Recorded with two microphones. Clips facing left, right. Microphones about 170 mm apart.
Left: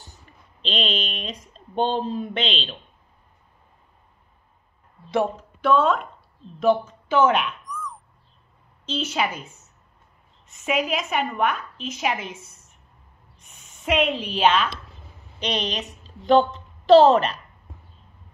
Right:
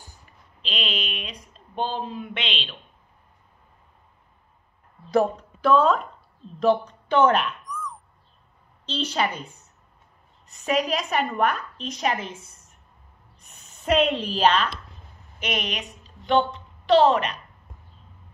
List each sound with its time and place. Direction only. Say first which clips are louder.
0.7 s speech: left 4 dB; 30° left (ahead or behind)
5.1 s speech: right 2 dB; centre (ahead or behind)
6.6 s a sound: left 1 dB; 5° left (ahead or behind)
8.8 s a woman's voice: even; 5° left (ahead or behind)
10.5 s a woman's voice: even; 5° left (ahead or behind)
12.2 s a woman's voice: even; 30° right (ahead or behind)
13.8 s a woman's voice: right 1 dB; centre (ahead or behind)
15.3 s a woman's voice: left 2 dB; 30° left (ahead or behind)
15.8 s a sound: left 4 dB; centre (ahead or behind)
17.1 s speech: left 4 dB; 35° left (ahead or behind)